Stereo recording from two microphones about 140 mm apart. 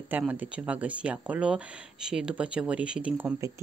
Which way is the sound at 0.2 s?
10° right (ahead or behind).